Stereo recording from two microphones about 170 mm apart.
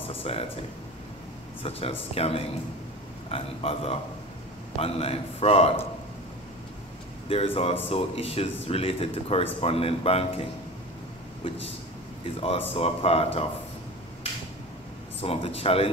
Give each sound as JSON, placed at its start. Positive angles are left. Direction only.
{"t": 0.1, "sound": "speech", "side_deg": 35}
{"t": 1.6, "sound": "speech", "side_deg": 35}
{"t": 7.2, "sound": "speech", "side_deg": 35}
{"t": 12.4, "sound": "speech", "side_deg": 35}
{"t": 15.2, "sound": "speech", "side_deg": 35}